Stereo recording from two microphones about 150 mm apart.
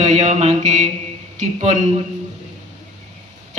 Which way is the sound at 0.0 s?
50° right (ahead or behind).